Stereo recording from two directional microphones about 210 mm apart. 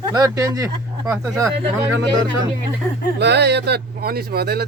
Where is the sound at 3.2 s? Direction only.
55° right (ahead or behind).